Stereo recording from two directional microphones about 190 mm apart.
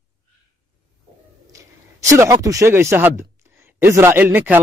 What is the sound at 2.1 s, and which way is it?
Speech, 15° right (ahead or behind).